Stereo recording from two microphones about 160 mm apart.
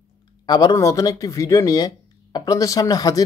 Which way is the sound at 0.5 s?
25° left (ahead or behind).